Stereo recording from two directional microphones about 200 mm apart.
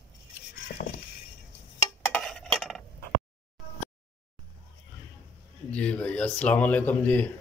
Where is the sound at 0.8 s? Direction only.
45° left (ahead or behind).